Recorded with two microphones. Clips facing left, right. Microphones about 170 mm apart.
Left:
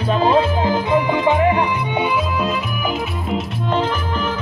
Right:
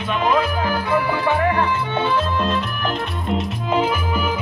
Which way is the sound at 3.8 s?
10° right (ahead or behind).